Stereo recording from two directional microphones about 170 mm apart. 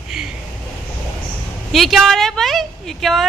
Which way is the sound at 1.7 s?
Centre (ahead or behind).